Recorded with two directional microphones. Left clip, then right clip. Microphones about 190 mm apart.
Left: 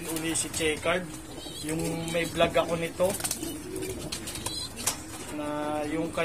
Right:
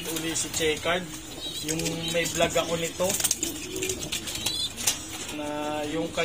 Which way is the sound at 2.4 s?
10° left (ahead or behind).